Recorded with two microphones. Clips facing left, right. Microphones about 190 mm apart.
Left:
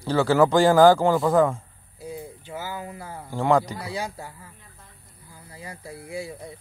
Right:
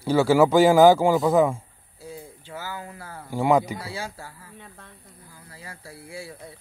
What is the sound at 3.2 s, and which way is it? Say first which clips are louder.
Speech: right 1 dB; 10° right (ahead or behind).